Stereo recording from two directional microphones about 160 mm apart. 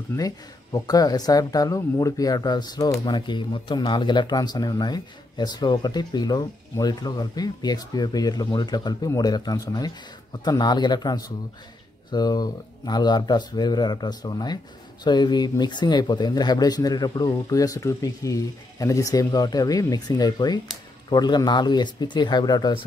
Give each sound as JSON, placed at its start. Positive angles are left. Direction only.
{"t": 0.7, "sound": "speech", "side_deg": 25}